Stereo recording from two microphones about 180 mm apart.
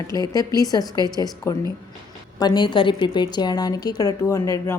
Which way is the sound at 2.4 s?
25° left (ahead or behind).